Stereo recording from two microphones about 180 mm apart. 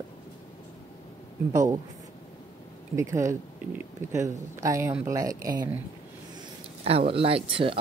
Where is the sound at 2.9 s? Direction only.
15° right (ahead or behind).